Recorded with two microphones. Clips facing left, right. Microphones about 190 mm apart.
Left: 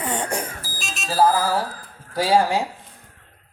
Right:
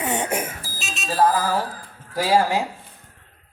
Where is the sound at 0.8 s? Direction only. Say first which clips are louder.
Left 1 dB; centre (ahead or behind).